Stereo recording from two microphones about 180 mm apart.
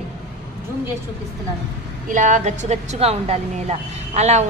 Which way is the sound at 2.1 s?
45° right (ahead or behind).